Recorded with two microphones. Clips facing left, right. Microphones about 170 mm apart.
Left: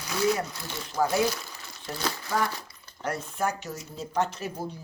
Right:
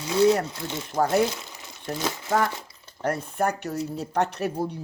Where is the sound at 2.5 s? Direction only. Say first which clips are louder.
Right 2 dB; 25° right (ahead or behind).